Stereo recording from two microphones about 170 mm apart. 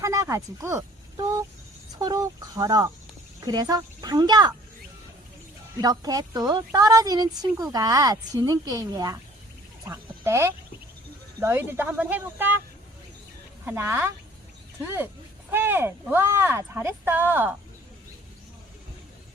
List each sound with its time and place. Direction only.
0.0 s a sound: 20° right (ahead or behind)
3.4 s a woman's voice: 25° right (ahead or behind)
5.8 s a woman's voice: 20° right (ahead or behind)
13.7 s speech: 15° right (ahead or behind)